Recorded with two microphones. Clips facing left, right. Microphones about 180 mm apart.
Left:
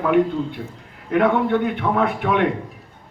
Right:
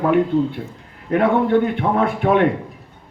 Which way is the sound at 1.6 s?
40° right (ahead or behind).